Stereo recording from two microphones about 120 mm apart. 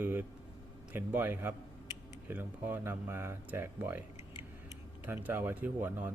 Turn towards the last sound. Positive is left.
turn(degrees=-15)  # may be behind; listen again after turning